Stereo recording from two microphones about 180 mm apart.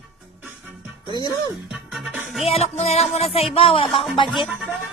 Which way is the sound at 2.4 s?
35° left (ahead or behind).